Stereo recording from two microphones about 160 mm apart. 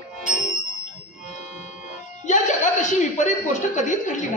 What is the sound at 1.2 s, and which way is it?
Music, 50° left (ahead or behind).